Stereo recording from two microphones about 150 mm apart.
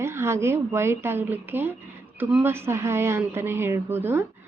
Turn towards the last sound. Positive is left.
turn(degrees=-15)  # may be behind; listen again after turning